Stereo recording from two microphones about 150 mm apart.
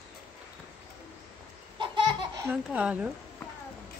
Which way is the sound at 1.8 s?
30° right (ahead or behind).